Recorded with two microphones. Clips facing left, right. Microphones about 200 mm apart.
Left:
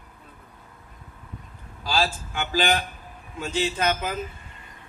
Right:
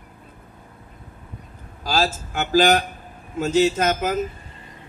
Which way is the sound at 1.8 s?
45° right (ahead or behind).